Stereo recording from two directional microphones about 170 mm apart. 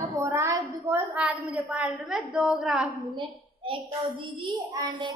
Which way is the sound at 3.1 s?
30° right (ahead or behind).